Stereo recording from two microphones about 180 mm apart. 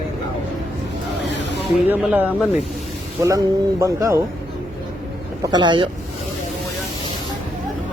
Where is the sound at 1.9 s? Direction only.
5° right (ahead or behind).